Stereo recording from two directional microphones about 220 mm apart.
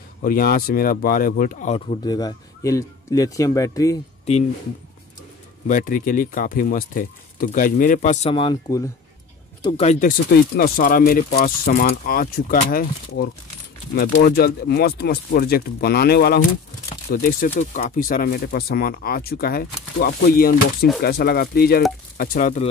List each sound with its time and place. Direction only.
0.2 s speech: 40° left (ahead or behind)
2.0 s speech: 15° left (ahead or behind)
5.7 s speech: 40° left (ahead or behind)
13.9 s speech: 45° left (ahead or behind)